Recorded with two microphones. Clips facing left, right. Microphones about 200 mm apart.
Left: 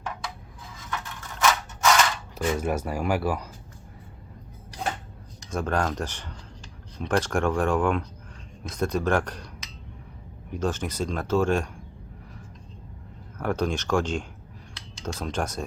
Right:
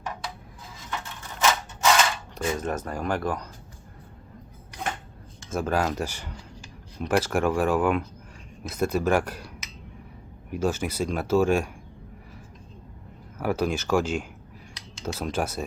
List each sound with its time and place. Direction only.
0.9 s crushing: 25° right (ahead or behind)
2.3 s speech: 10° left (ahead or behind)
5.5 s speech: 5° right (ahead or behind)
13.4 s speech: 5° right (ahead or behind)